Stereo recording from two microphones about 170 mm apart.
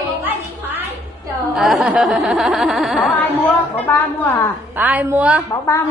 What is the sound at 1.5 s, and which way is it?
Snicker, centre (ahead or behind).